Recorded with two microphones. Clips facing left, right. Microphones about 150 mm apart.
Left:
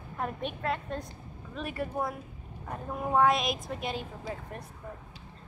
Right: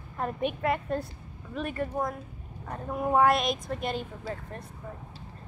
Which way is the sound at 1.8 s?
5° left (ahead or behind).